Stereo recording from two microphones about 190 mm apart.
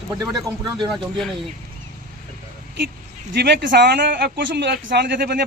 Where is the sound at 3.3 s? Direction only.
65° right (ahead or behind).